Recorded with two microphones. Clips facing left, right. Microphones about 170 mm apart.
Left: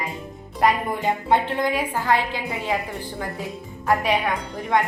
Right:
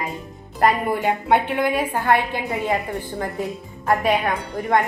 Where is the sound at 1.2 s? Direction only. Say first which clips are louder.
Right 1 dB; 65° right (ahead or behind).